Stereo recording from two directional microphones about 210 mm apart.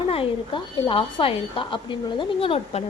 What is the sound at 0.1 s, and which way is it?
A woman's voice, 25° left (ahead or behind).